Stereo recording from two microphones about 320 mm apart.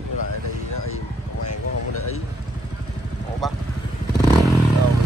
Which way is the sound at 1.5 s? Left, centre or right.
Left.